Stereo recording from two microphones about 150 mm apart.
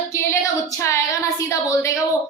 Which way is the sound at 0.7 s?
20° left (ahead or behind).